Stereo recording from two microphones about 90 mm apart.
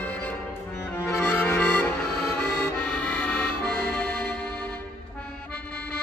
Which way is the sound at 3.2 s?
15° left (ahead or behind).